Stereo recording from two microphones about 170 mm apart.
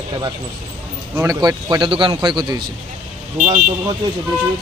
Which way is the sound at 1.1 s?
20° right (ahead or behind).